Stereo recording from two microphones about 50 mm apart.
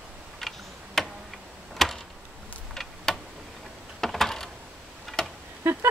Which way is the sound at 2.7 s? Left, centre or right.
Centre.